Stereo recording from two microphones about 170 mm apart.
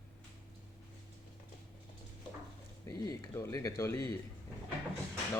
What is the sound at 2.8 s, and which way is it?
Speech, 20° left (ahead or behind).